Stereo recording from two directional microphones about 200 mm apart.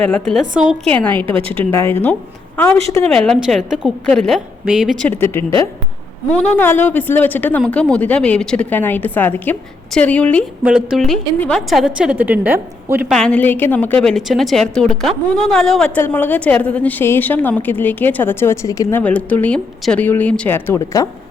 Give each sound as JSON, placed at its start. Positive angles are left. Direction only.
{"t": 0.0, "sound": "a woman's voice", "side_deg": 5}
{"t": 1.4, "sound": "a woman's voice", "side_deg": -30}
{"t": 2.6, "sound": "a woman's voice", "side_deg": 10}
{"t": 6.3, "sound": "a woman's voice", "side_deg": 10}
{"t": 10.6, "sound": "a woman's voice", "side_deg": -5}
{"t": 13.1, "sound": "a woman's voice", "side_deg": 5}